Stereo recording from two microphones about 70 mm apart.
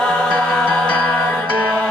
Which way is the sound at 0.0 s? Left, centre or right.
Centre.